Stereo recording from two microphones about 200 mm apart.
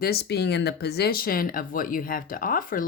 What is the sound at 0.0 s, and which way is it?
Speech, 55° left (ahead or behind).